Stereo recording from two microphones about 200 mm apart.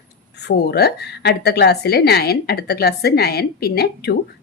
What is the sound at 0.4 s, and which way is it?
A woman's voice, 55° left (ahead or behind).